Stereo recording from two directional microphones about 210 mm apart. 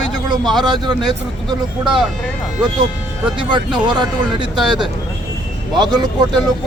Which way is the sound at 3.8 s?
20° right (ahead or behind).